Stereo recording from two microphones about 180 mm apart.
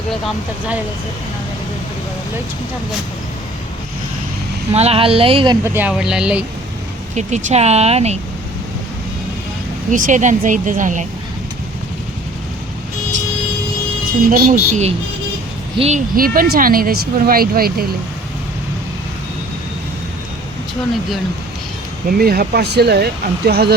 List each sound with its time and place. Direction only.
4.7 s speech: 35° right (ahead or behind)
5.6 s speech: 10° right (ahead or behind)
7.2 s speech: 40° right (ahead or behind)
9.9 s a woman's voice: 45° right (ahead or behind)
14.3 s a woman's voice: 50° right (ahead or behind)
16.1 s speech: 50° right (ahead or behind)
22.2 s speech: 60° right (ahead or behind)